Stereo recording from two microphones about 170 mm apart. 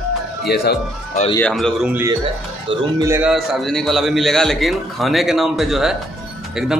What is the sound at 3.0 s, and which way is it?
Speech, 15° right (ahead or behind).